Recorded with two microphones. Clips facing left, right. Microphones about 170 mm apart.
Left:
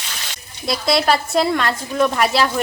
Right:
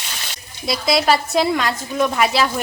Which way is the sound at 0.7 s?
Centre (ahead or behind).